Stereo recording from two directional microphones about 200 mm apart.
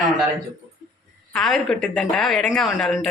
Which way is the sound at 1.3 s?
5° left (ahead or behind).